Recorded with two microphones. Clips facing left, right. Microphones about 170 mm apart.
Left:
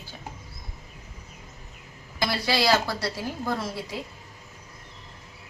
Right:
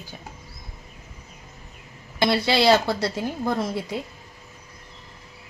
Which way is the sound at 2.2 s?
25° right (ahead or behind).